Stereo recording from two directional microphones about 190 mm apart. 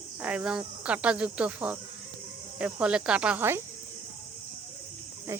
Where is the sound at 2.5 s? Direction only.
5° right (ahead or behind).